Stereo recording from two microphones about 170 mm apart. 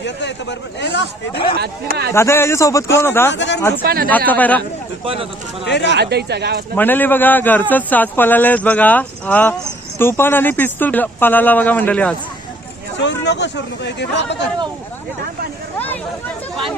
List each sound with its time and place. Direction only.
0.0 s speech: 90° left
1.4 s speech: 30° left (ahead or behind)
1.6 s speech: 70° right (ahead or behind)
2.1 s a man's voice: 15° left (ahead or behind)
3.3 s speech: 90° left
3.8 s speech: 60° right (ahead or behind)
4.3 s a man's voice: 10° left (ahead or behind)
5.6 s speech: 90° left
5.9 s speech: 75° right (ahead or behind)
6.7 s a man's voice: 10° left (ahead or behind)
13.0 s speech: 90° left